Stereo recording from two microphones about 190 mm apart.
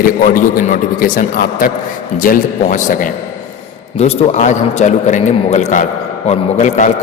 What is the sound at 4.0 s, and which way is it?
A man's voice, 40° left (ahead or behind).